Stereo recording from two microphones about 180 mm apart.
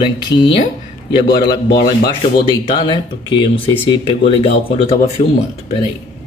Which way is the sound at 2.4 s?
25° left (ahead or behind).